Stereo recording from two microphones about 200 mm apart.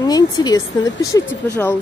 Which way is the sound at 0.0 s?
20° left (ahead or behind).